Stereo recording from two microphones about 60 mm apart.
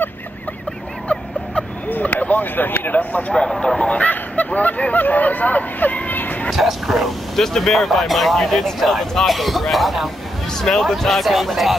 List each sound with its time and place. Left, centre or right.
1.9 s speech: left
3.3 s speech: centre; by 6.5 s left
6.5 s speech: centre